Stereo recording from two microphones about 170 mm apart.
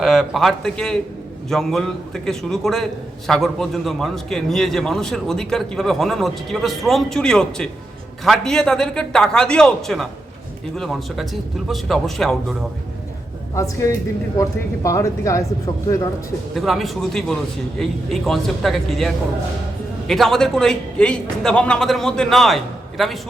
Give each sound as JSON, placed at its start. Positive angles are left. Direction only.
{"t": 0.0, "sound": "a man's voice", "side_deg": 0}
{"t": 14.8, "sound": "speech", "side_deg": 20}
{"t": 16.6, "sound": "a man's voice", "side_deg": 0}